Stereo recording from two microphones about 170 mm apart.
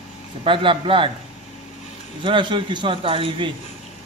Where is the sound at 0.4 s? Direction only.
30° right (ahead or behind).